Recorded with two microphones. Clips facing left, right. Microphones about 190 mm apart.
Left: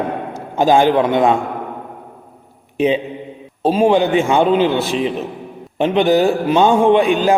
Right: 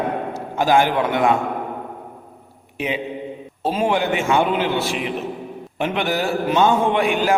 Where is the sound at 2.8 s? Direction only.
25° left (ahead or behind).